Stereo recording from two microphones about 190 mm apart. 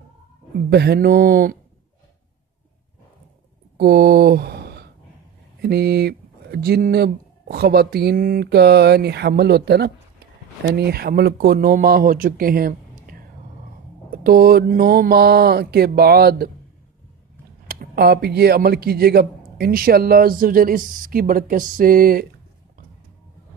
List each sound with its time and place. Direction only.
0.7 s speech: 60° right (ahead or behind)
3.7 s speech: 55° right (ahead or behind)
14.1 s speech: 50° right (ahead or behind)
17.6 s speech: 55° right (ahead or behind)